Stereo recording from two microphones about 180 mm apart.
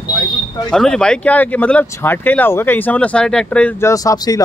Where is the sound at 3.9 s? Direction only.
20° left (ahead or behind).